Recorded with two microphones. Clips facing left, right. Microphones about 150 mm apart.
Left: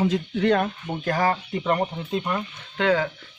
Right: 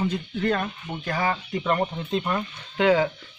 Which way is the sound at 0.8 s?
45° left (ahead or behind).